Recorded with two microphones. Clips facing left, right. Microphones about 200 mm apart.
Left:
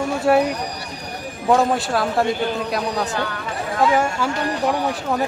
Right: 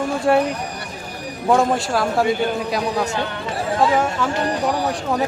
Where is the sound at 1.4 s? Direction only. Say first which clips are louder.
Even; centre (ahead or behind).